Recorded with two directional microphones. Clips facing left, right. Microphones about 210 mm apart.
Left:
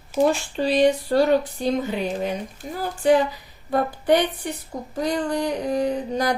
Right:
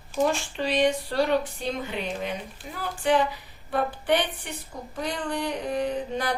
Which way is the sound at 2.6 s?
40° left (ahead or behind).